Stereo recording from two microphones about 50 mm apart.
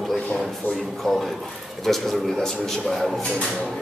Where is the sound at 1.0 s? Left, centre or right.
Centre.